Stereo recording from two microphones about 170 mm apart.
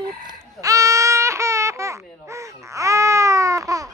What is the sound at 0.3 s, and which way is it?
Babbling, 20° right (ahead or behind).